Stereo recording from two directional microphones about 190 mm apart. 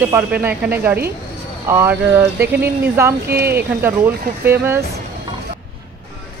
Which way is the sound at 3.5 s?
10° right (ahead or behind).